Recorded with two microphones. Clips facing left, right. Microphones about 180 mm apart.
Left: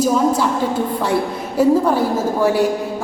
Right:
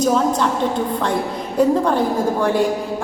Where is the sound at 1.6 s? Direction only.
5° left (ahead or behind).